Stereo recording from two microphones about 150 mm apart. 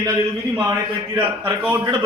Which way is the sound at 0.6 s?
20° right (ahead or behind).